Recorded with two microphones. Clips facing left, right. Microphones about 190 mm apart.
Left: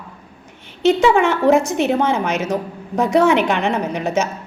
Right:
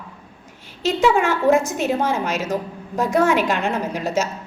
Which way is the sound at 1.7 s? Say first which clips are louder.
Left 4 dB; 70° left (ahead or behind).